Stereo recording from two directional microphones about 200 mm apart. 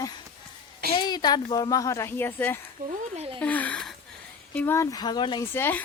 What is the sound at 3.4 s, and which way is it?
Speech, 5° left (ahead or behind).